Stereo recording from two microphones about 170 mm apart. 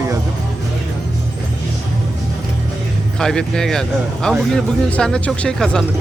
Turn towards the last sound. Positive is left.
turn(degrees=5)  # may be behind; listen again after turning